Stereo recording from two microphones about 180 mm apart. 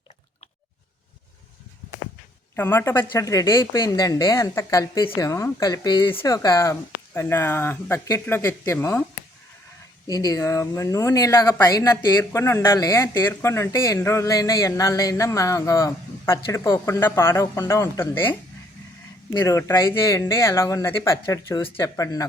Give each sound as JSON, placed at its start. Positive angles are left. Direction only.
{"t": 2.6, "sound": "speech", "side_deg": 10}
{"t": 10.1, "sound": "speech", "side_deg": 20}